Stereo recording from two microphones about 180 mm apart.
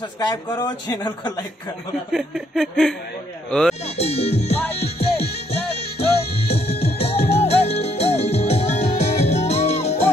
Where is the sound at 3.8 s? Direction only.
35° left (ahead or behind).